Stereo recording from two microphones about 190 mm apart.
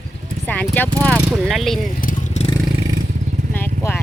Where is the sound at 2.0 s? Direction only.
40° left (ahead or behind).